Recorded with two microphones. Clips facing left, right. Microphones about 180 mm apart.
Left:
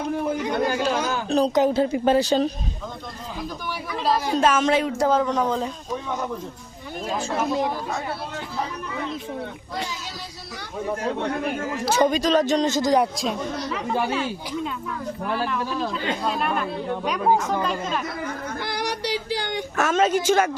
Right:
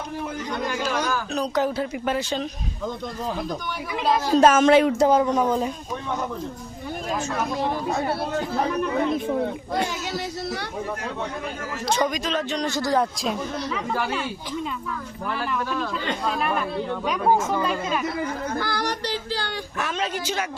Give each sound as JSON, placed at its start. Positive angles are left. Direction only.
{"t": 0.3, "sound": "speech", "side_deg": 60}
{"t": 0.7, "sound": "a woman's voice", "side_deg": 30}
{"t": 4.4, "sound": "speech", "side_deg": -45}
{"t": 4.7, "sound": "speech", "side_deg": -65}
{"t": 4.9, "sound": "a woman's voice", "side_deg": -15}
{"t": 8.9, "sound": "speech", "side_deg": -55}
{"t": 12.0, "sound": "a woman's voice", "side_deg": 30}
{"t": 12.6, "sound": "speech", "side_deg": 20}
{"t": 13.1, "sound": "speech", "side_deg": 0}
{"t": 16.0, "sound": "speech", "side_deg": 0}
{"t": 18.6, "sound": "speech", "side_deg": 15}
{"t": 19.7, "sound": "a woman's voice", "side_deg": 45}